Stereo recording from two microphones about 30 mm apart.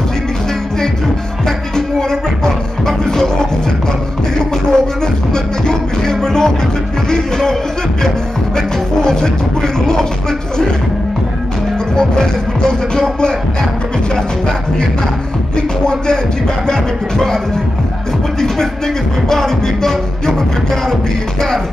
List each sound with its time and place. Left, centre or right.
1.8 s music: left
4.4 s music: left
8.5 s music: left
11.9 s music: left
15.5 s music: left
19.2 s music: centre